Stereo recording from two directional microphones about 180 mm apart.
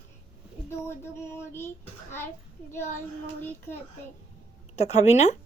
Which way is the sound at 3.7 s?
10° left (ahead or behind).